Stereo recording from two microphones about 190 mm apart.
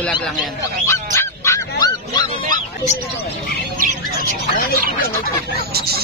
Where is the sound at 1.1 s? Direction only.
15° left (ahead or behind).